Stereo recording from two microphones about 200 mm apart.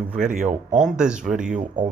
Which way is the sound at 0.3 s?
40° right (ahead or behind).